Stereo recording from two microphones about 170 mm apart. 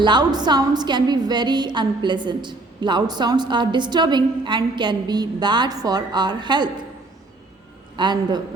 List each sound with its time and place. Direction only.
0.0 s a woman's voice: 25° right (ahead or behind)
7.9 s a woman's voice: 25° right (ahead or behind)